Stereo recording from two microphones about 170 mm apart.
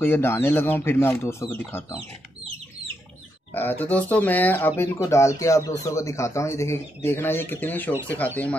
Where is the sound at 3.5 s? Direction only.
10° left (ahead or behind).